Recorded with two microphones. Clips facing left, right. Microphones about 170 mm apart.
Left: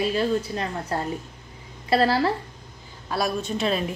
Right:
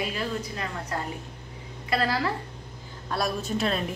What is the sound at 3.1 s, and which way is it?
Speech, centre (ahead or behind).